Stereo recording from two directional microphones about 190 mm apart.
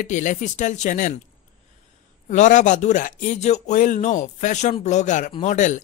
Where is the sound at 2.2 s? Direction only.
40° left (ahead or behind).